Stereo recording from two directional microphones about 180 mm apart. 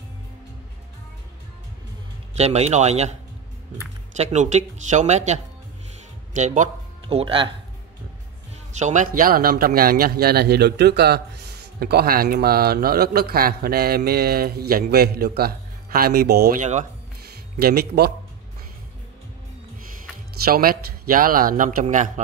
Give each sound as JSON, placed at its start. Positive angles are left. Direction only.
{"t": 2.3, "sound": "speech", "side_deg": -35}
{"t": 8.7, "sound": "a man's voice", "side_deg": -40}
{"t": 16.5, "sound": "speech", "side_deg": -40}
{"t": 17.6, "sound": "a man's voice", "side_deg": -60}
{"t": 20.4, "sound": "a man's voice", "side_deg": -55}